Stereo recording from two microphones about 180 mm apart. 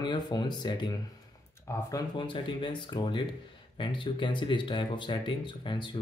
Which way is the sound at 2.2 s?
25° left (ahead or behind).